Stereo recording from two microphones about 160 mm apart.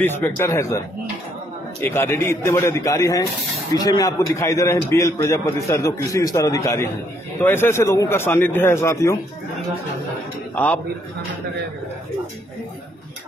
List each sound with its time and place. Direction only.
0.0 s a man's voice: 15° left (ahead or behind)
10.5 s a man's voice: 10° left (ahead or behind)